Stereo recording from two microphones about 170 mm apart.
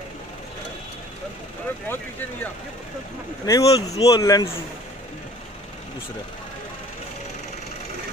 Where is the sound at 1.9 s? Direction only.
10° left (ahead or behind).